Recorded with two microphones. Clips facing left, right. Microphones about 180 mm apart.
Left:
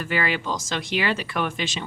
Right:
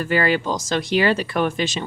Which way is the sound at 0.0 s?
40° right (ahead or behind).